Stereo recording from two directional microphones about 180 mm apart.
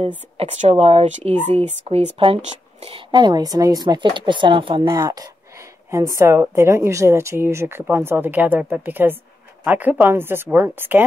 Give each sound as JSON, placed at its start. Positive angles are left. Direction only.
{"t": 0.4, "sound": "a woman's voice", "side_deg": -35}